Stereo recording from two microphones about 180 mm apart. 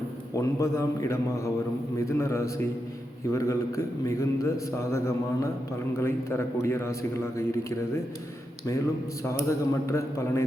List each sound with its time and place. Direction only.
0.3 s a man's voice: 15° left (ahead or behind)
9.2 s a man's voice: 15° left (ahead or behind)